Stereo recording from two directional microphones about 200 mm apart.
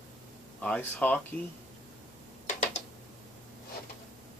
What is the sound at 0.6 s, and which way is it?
Speech, 5° left (ahead or behind).